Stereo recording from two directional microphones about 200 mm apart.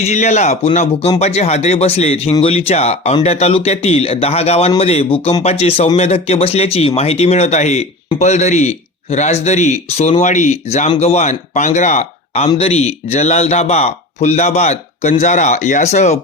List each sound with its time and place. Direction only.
0.0 s speech: 35° left (ahead or behind)